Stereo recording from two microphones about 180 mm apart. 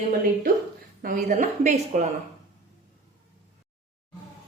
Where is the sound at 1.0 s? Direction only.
50° right (ahead or behind).